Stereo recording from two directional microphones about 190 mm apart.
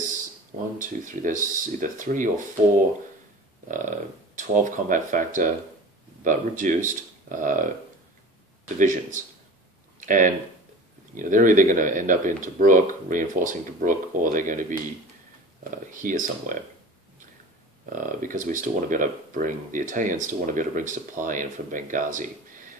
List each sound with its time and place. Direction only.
0.7 s speech: 45° right (ahead or behind)
4.4 s speech: 40° right (ahead or behind)
8.7 s speech: 45° right (ahead or behind)
17.9 s speech: 45° right (ahead or behind)